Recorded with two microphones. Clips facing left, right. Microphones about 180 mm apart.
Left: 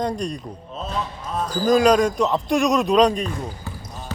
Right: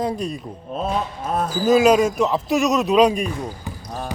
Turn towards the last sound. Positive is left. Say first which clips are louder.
# right 2 dB
turn(degrees=-10)  # may be behind; listen again after turning